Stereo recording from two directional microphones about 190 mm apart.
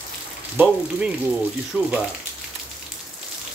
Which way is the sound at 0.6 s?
5° right (ahead or behind).